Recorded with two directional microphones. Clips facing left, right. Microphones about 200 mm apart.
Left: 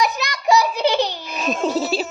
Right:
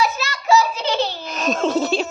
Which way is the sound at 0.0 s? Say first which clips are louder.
Left 1 dB; 15° left (ahead or behind).